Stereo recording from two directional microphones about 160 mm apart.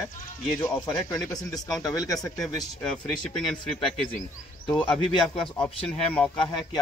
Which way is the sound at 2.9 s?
5° left (ahead or behind).